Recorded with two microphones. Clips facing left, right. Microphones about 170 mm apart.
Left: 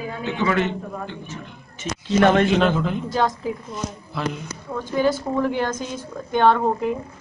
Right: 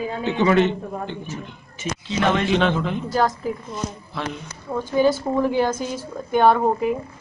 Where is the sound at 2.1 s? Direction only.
50° left (ahead or behind).